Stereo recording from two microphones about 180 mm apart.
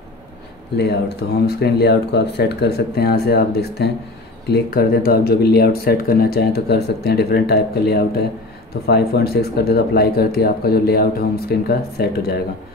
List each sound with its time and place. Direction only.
0.7 s speech: 65° left (ahead or behind)